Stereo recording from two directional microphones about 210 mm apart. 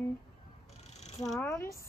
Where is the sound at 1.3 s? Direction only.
10° left (ahead or behind).